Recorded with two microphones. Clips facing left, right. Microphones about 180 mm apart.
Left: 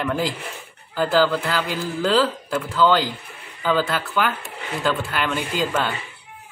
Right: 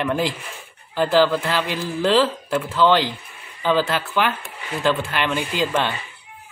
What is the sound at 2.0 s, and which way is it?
Speech, centre (ahead or behind).